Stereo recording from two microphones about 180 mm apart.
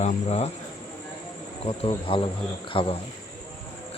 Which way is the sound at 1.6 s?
30° left (ahead or behind).